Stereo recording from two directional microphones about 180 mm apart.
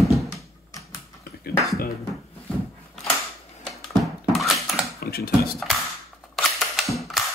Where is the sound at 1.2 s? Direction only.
60° left (ahead or behind).